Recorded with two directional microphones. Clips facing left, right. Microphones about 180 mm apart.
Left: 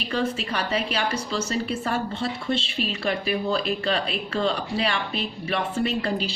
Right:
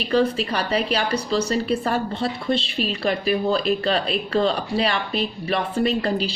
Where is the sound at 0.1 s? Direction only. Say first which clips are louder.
Right 6 dB; 35° right (ahead or behind).